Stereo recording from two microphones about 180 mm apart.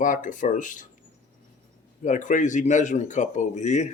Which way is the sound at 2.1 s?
45° left (ahead or behind).